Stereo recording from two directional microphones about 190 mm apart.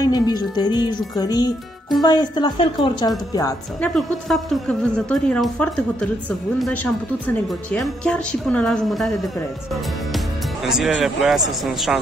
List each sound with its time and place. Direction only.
0.0 s speech: 20° left (ahead or behind)
3.8 s a woman's voice: centre (ahead or behind)
7.7 s a woman's voice: centre (ahead or behind)